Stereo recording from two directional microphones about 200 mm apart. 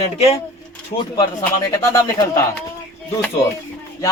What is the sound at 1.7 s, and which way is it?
Speech, 15° left (ahead or behind).